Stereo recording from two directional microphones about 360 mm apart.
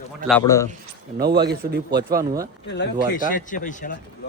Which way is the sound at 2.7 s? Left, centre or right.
Left.